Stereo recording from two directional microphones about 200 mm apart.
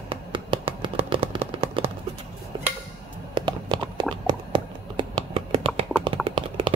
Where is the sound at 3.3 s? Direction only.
20° right (ahead or behind).